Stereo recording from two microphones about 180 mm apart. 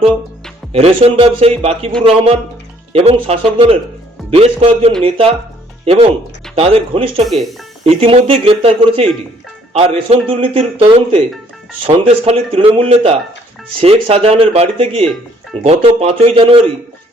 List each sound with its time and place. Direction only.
0.7 s a man's voice: 30° right (ahead or behind)
7.3 s speech: centre (ahead or behind)
7.9 s a man's voice: 30° right (ahead or behind)